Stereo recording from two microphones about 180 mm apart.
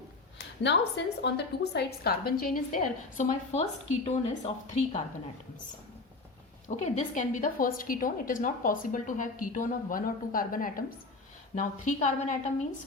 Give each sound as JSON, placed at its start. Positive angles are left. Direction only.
{"t": 0.6, "sound": "a woman's voice", "side_deg": 75}
{"t": 6.8, "sound": "a woman's voice", "side_deg": 45}